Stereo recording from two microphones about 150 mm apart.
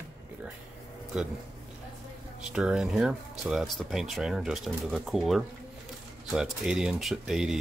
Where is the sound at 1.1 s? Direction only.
5° right (ahead or behind).